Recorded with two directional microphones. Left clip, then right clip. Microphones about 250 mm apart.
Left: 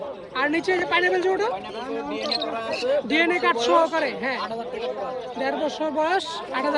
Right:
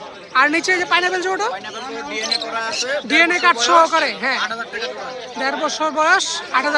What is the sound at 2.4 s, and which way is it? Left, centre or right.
Speech, right.